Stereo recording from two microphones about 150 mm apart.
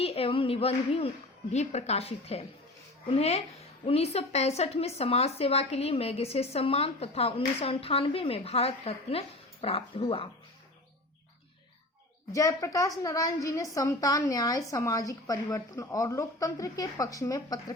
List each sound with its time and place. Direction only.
0.0 s a woman's voice: 40° left (ahead or behind)
12.3 s a woman's voice: 20° left (ahead or behind)